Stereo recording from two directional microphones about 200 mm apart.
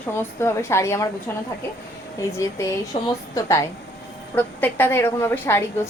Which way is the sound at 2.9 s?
30° left (ahead or behind).